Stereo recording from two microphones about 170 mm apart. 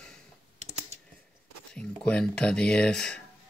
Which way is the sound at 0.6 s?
40° right (ahead or behind).